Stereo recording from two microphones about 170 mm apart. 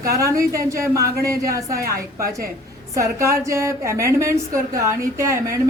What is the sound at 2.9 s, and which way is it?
A woman's voice, 20° right (ahead or behind).